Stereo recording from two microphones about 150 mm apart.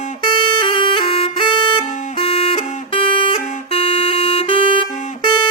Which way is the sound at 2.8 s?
35° left (ahead or behind).